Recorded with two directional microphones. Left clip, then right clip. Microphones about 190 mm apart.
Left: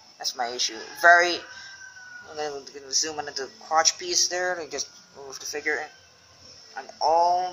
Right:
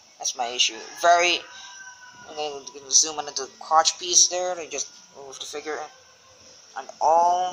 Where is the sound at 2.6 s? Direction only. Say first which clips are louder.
Right 6 dB; 25° left (ahead or behind).